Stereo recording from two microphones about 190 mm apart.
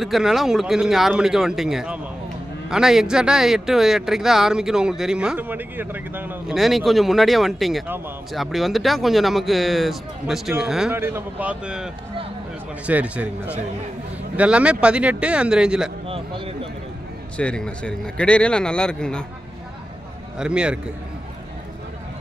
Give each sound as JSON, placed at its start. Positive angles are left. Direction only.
{"t": 0.0, "sound": "speech", "side_deg": 0}
{"t": 16.1, "sound": "speech", "side_deg": -30}
{"t": 17.4, "sound": "speech", "side_deg": 5}
{"t": 20.3, "sound": "speech", "side_deg": -5}